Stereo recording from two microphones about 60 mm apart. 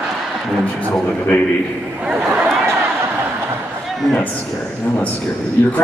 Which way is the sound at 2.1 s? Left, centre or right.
Centre.